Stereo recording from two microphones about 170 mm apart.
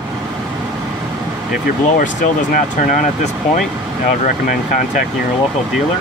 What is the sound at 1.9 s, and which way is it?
Speech, 50° left (ahead or behind).